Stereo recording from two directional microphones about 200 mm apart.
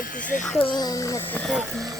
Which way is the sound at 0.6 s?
20° left (ahead or behind).